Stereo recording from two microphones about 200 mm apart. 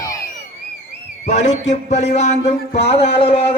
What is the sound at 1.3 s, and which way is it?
Speech, 35° left (ahead or behind).